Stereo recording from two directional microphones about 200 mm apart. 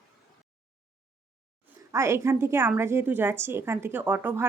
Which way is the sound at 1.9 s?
15° right (ahead or behind).